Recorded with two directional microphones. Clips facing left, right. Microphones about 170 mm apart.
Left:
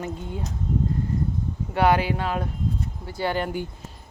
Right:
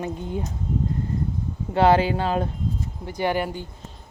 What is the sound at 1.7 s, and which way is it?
Speech, 25° right (ahead or behind).